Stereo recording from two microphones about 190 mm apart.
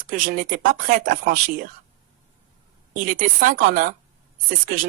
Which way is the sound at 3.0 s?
45° right (ahead or behind).